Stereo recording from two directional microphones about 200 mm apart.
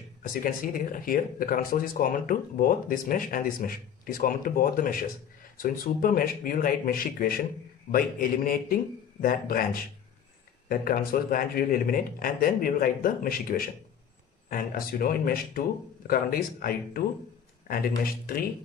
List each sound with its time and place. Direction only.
0.3 s speech: 45° left (ahead or behind)